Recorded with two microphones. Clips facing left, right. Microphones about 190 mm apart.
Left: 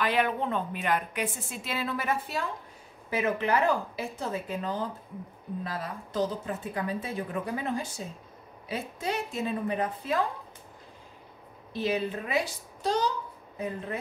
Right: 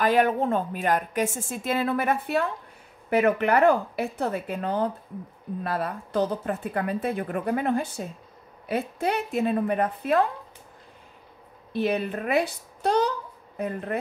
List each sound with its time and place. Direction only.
0.0 s a woman's voice: 45° right (ahead or behind)
11.7 s speech: 60° right (ahead or behind)